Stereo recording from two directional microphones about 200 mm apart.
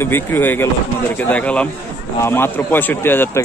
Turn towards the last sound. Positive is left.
turn(degrees=10)  # may be behind; listen again after turning